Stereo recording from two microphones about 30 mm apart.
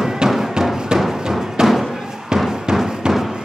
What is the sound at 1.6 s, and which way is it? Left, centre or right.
Thump, right.